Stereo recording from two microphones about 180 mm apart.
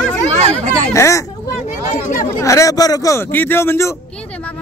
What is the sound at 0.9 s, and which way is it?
Speech, 15° left (ahead or behind).